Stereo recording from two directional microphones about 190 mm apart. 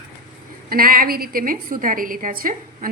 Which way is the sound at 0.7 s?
50° right (ahead or behind).